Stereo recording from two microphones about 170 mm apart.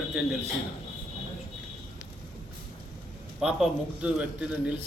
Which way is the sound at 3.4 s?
5° right (ahead or behind).